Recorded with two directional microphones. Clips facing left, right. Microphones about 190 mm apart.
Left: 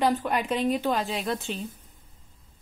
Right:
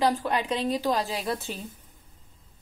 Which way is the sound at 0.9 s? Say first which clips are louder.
Even; centre (ahead or behind).